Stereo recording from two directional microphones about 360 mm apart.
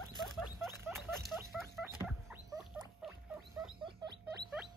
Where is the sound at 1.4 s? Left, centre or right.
Centre.